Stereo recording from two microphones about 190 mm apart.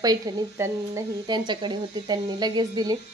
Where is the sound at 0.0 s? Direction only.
20° right (ahead or behind).